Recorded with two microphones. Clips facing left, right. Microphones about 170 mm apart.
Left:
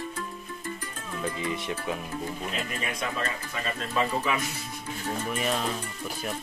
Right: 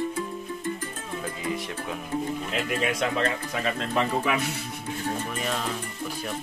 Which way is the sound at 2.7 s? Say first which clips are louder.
Right 6 dB; 80° right.